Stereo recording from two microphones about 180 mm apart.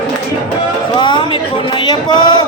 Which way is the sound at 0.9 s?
25° left (ahead or behind).